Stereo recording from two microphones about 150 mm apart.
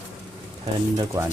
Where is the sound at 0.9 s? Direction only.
20° right (ahead or behind).